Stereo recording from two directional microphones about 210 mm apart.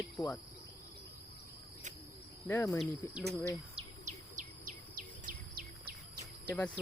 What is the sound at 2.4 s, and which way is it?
Speech, 15° left (ahead or behind).